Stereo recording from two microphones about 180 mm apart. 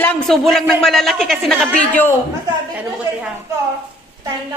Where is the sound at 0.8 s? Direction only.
Centre (ahead or behind).